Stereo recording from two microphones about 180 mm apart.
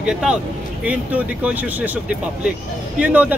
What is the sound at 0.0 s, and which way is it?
Speech, 5° right (ahead or behind).